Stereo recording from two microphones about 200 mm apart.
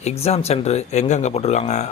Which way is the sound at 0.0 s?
30° left (ahead or behind).